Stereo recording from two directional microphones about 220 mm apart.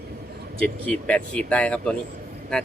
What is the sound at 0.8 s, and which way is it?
Speech, 5° left (ahead or behind).